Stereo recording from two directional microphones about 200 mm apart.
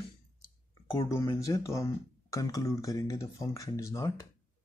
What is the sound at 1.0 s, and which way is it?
Speech, 15° left (ahead or behind).